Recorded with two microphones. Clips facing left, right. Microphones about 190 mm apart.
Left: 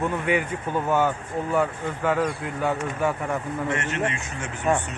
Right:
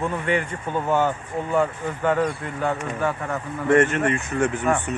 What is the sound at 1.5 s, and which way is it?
Speech, centre (ahead or behind).